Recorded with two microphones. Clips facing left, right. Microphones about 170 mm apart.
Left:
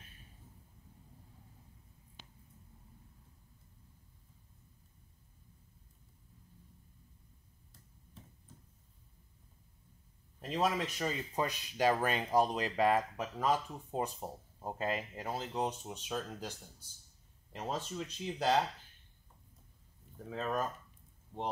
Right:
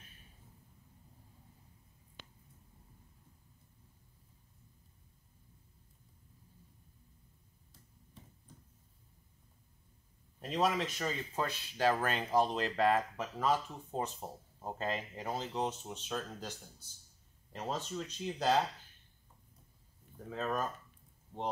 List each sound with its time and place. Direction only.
10.5 s speech: 10° left (ahead or behind)
17.6 s speech: 5° left (ahead or behind)
20.2 s speech: centre (ahead or behind)